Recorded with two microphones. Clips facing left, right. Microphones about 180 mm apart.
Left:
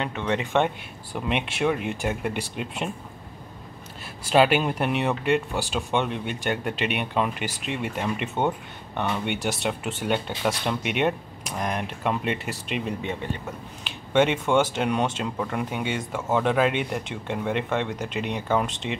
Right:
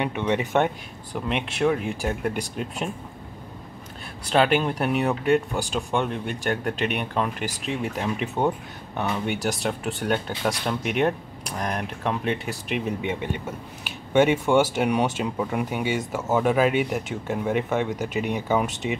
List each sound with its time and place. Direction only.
0.0 s speech: 15° right (ahead or behind)
1.1 s speech: 5° left (ahead or behind)
4.3 s speech: 5° left (ahead or behind)
13.0 s speech: 15° right (ahead or behind)